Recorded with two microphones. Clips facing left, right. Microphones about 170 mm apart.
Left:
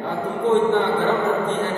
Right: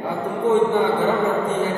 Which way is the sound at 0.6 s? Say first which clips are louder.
Even; 10° right (ahead or behind).